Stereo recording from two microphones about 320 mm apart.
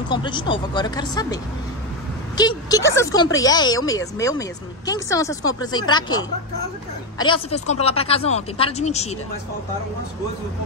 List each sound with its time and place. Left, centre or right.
0.1 s speech: centre